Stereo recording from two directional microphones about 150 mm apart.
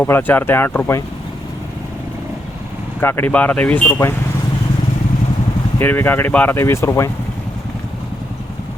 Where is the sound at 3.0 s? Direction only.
15° left (ahead or behind).